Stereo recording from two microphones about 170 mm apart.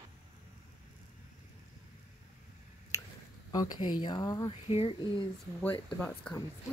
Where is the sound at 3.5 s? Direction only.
25° left (ahead or behind).